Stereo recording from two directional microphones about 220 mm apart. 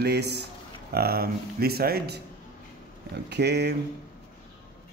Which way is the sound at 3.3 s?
50° right (ahead or behind).